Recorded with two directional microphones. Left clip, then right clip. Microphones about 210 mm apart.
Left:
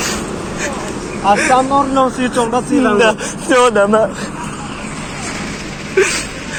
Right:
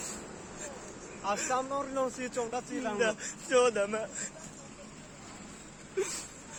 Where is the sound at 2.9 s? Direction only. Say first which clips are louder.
Left 19 dB; 25° left (ahead or behind).